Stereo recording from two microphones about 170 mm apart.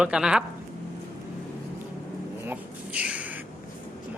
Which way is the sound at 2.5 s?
10° right (ahead or behind).